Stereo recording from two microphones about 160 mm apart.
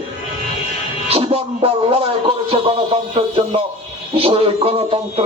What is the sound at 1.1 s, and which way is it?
A man's voice, 40° right (ahead or behind).